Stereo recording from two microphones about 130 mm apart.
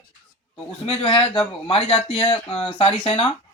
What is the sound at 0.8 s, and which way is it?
Speech, 45° left (ahead or behind).